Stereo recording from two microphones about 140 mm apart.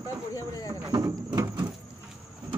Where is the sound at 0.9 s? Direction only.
30° right (ahead or behind).